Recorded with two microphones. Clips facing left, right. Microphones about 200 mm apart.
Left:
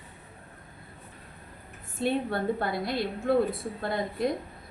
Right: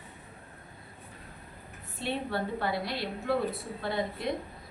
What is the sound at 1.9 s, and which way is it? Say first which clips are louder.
A woman's voice: left 5 dB; 50° left (ahead or behind).